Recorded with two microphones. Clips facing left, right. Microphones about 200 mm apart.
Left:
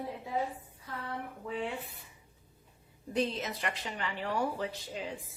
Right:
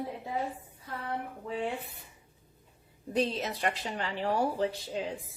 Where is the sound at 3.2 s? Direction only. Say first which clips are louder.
Right 3 dB; 35° right (ahead or behind).